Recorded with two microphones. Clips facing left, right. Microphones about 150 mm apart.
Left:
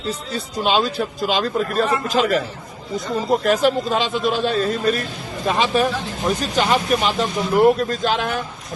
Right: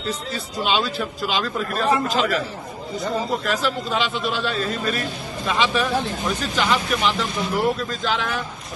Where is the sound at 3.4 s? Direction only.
50° left (ahead or behind).